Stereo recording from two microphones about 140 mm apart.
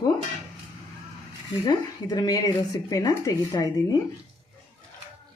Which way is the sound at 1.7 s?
30° left (ahead or behind).